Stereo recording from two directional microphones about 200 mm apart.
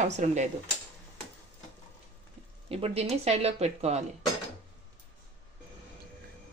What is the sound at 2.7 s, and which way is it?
Speech, 30° right (ahead or behind).